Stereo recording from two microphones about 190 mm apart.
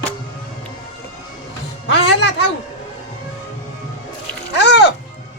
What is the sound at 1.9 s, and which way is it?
Music, 65° left (ahead or behind).